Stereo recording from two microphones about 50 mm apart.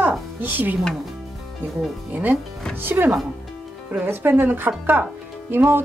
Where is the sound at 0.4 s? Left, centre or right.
Right.